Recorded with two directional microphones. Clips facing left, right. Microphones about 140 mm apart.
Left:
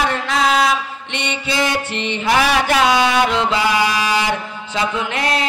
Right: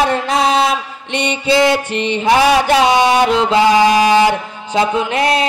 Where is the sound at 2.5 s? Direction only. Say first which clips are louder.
Right 4 dB; 25° right (ahead or behind).